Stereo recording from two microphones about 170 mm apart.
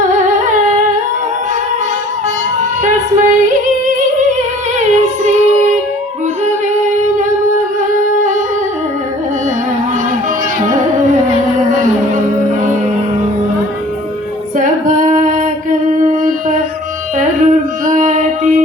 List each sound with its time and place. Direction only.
2.8 s music: 50° right (ahead or behind)
4.8 s child singing: 45° right (ahead or behind)
14.5 s female singing: 50° right (ahead or behind)
16.0 s music: 50° right (ahead or behind)